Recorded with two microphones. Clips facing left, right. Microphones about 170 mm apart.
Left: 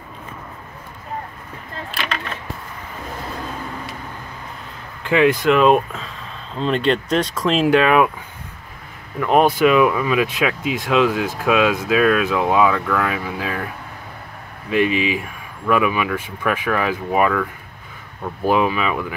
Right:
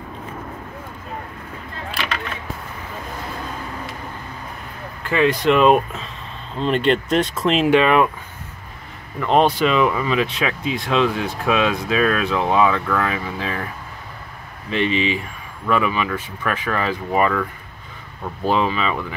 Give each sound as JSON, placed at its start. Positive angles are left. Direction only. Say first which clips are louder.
{"t": 5.0, "sound": "speech", "louder": "left 3 dB", "side_deg": 15}
{"t": 5.4, "sound": "speech", "louder": "even", "side_deg": 0}
{"t": 9.2, "sound": "speech", "louder": "left 2 dB", "side_deg": 5}
{"t": 14.7, "sound": "speech", "louder": "left 2 dB", "side_deg": 5}